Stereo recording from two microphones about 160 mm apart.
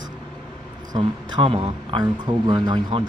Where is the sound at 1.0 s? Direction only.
30° right (ahead or behind).